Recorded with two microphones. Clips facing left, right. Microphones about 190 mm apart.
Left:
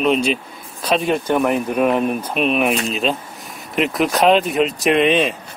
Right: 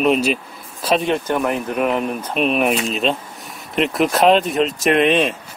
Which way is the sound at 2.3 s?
Centre (ahead or behind).